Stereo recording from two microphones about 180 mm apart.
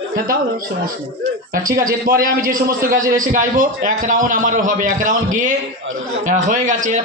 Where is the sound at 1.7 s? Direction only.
50° right (ahead or behind).